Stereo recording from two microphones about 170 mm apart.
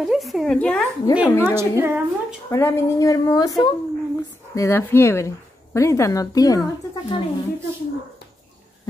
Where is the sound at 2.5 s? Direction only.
15° left (ahead or behind).